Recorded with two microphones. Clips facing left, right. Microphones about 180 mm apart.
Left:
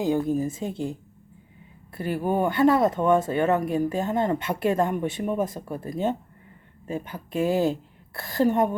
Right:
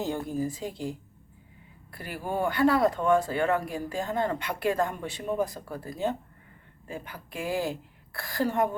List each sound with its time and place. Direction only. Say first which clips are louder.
0.0 s speech: left 6 dB; 20° left (ahead or behind)